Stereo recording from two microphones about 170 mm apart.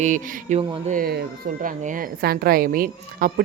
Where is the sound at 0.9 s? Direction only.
60° right (ahead or behind).